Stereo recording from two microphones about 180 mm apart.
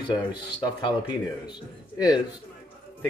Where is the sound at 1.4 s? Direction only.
25° left (ahead or behind).